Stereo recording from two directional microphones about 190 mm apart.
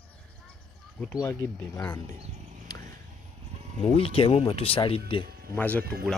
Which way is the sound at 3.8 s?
30° left (ahead or behind).